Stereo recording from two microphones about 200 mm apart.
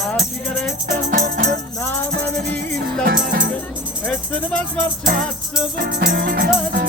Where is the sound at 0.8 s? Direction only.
45° right (ahead or behind).